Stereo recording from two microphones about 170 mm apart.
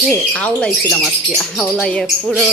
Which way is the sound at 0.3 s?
5° left (ahead or behind).